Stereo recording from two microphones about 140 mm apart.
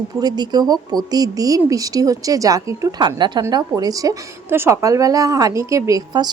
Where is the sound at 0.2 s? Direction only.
30° right (ahead or behind).